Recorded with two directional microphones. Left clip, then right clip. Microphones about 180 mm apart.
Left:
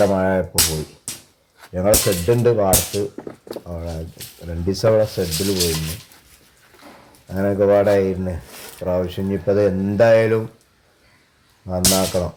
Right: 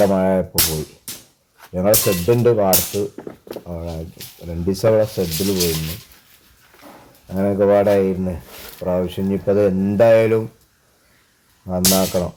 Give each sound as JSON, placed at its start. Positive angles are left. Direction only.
{"t": 0.0, "sound": "speech", "side_deg": 5}
{"t": 5.5, "sound": "speech", "side_deg": 30}
{"t": 7.3, "sound": "speech", "side_deg": 0}
{"t": 11.6, "sound": "speech", "side_deg": 5}